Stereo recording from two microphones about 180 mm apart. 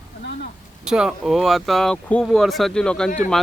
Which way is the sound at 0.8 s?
5° right (ahead or behind).